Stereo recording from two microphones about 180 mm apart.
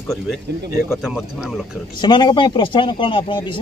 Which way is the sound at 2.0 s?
25° left (ahead or behind).